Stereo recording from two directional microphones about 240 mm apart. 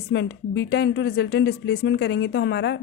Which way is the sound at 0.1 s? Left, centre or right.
Left.